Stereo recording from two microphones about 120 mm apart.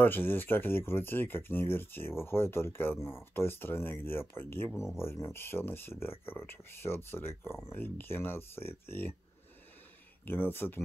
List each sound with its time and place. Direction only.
0.0 s speech: 15° left (ahead or behind)
10.2 s speech: 15° left (ahead or behind)